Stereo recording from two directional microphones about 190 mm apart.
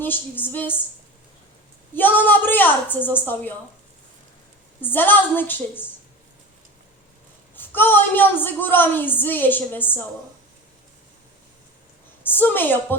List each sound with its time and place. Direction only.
0.0 s a woman's voice: 10° left (ahead or behind)
2.0 s a woman's voice: 10° left (ahead or behind)
4.8 s a woman's voice: 10° left (ahead or behind)
7.5 s a woman's voice: 10° left (ahead or behind)
12.2 s a woman's voice: 10° left (ahead or behind)